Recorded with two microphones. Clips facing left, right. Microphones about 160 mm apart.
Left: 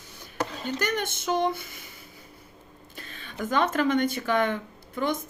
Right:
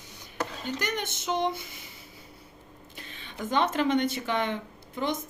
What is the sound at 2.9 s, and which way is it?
Speech, 20° right (ahead or behind).